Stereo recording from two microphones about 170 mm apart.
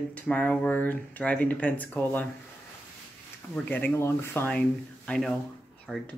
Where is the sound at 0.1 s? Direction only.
10° left (ahead or behind).